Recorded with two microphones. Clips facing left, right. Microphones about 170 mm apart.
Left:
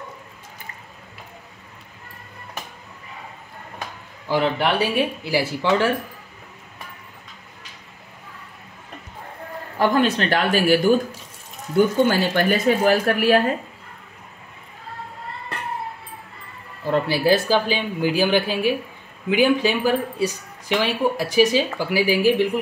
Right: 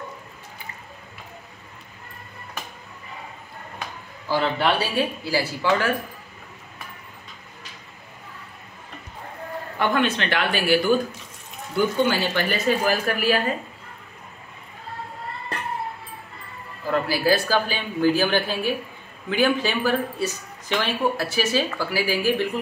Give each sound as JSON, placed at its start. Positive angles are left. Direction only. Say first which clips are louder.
{"t": 4.3, "sound": "speech", "louder": "left 2 dB", "side_deg": 15}
{"t": 9.8, "sound": "a woman's voice", "louder": "left 4 dB", "side_deg": 35}
{"t": 16.8, "sound": "a woman's voice", "louder": "left 3 dB", "side_deg": 25}